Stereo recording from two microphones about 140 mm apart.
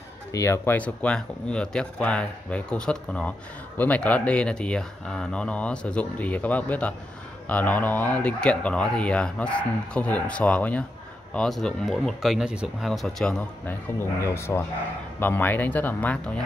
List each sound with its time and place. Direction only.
0.3 s speech: 20° left (ahead or behind)